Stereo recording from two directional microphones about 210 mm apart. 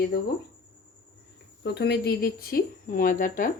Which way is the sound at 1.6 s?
50° left (ahead or behind).